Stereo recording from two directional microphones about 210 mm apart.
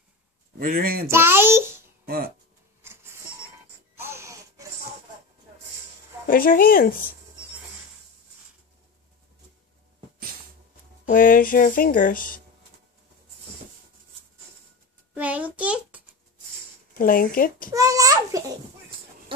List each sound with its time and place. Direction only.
0.6 s speech: 45° right (ahead or behind)
1.1 s a child's voice: 10° right (ahead or behind)
2.0 s speech: 45° right (ahead or behind)
2.8 s printer: 10° right (ahead or behind)
4.0 s wheeze: 15° right (ahead or behind)
6.2 s speech: 40° left (ahead or behind)
11.1 s speech: 40° left (ahead or behind)
15.1 s a sound: 5° right (ahead or behind)
17.0 s speech: 40° left (ahead or behind)
17.6 s a child's voice: 15° right (ahead or behind)